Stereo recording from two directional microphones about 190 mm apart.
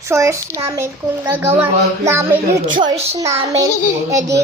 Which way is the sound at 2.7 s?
25° right (ahead or behind).